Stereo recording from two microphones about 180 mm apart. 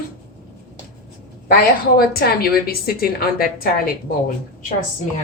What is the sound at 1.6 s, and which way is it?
A woman's voice, 55° left (ahead or behind).